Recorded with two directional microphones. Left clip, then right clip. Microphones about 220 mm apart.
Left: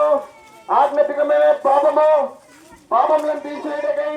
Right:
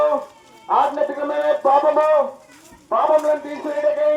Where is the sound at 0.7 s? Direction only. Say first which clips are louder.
Left 1 dB; 25° right (ahead or behind).